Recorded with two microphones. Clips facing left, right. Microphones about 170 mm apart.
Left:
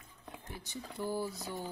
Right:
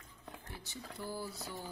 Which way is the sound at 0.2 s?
15° left (ahead or behind).